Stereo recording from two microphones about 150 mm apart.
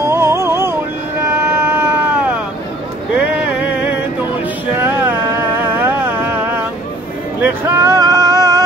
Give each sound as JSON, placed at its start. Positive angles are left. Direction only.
{"t": 0.0, "sound": "music", "side_deg": -15}
{"t": 1.5, "sound": "a sound", "side_deg": -15}
{"t": 4.8, "sound": "music", "side_deg": -15}
{"t": 7.4, "sound": "male singing", "side_deg": -15}